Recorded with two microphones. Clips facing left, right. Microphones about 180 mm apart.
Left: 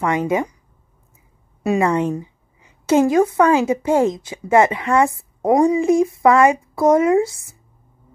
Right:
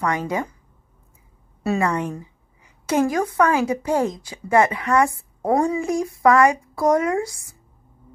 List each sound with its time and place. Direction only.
0.0 s a woman's voice: 20° left (ahead or behind)
1.6 s a woman's voice: 20° left (ahead or behind)